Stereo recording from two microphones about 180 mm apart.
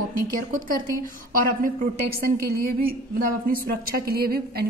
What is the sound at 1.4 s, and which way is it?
Speech, 50° right (ahead or behind).